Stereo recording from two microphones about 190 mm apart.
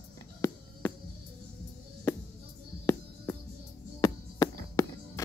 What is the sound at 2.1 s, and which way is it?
Music, 15° left (ahead or behind).